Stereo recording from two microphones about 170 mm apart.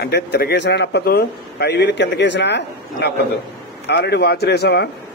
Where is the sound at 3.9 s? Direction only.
75° left (ahead or behind).